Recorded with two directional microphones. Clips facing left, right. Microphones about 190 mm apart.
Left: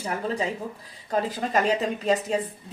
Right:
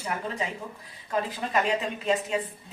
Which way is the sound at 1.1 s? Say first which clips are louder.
Left 3 dB; 40° left (ahead or behind).